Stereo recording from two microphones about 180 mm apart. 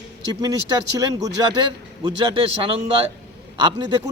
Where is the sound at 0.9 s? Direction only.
20° right (ahead or behind).